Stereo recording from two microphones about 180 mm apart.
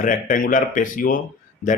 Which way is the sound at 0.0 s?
45° left (ahead or behind).